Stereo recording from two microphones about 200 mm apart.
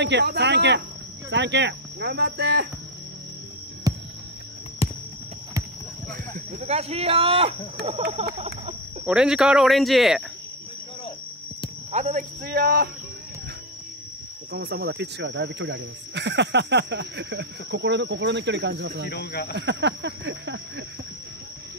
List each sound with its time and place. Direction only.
0.0 s speech: 55° right (ahead or behind)
3.9 s music: 20° right (ahead or behind)
4.8 s a sound: 30° left (ahead or behind)
6.3 s speech: 30° right (ahead or behind)
9.0 s speech: 5° right (ahead or behind)
11.9 s speech: 40° right (ahead or behind)
14.5 s speech: 50° right (ahead or behind)
19.0 s speech: 50° left (ahead or behind)
19.5 s speech: 60° right (ahead or behind)